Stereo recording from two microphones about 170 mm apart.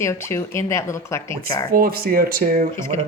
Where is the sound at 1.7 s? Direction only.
55° right (ahead or behind).